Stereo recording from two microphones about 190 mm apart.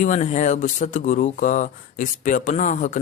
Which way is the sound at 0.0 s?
40° left (ahead or behind).